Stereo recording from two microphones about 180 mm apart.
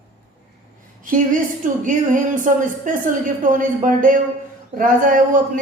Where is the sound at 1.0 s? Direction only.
45° right (ahead or behind).